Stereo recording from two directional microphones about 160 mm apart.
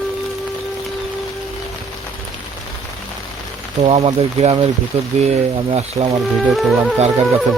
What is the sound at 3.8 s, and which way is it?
Speech, 40° right (ahead or behind).